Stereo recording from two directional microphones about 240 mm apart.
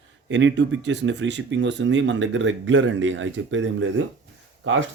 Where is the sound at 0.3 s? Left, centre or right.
Right.